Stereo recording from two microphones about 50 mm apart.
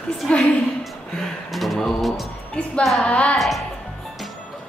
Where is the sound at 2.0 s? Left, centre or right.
Centre.